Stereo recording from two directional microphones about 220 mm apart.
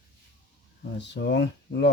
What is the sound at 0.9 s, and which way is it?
Speech, 50° left (ahead or behind).